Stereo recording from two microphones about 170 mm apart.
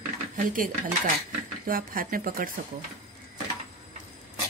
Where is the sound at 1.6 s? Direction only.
55° right (ahead or behind).